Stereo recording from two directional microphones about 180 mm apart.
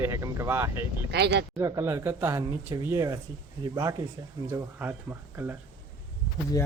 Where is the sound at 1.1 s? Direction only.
65° right (ahead or behind).